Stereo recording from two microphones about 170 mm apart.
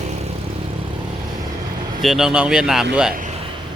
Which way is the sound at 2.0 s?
Centre (ahead or behind).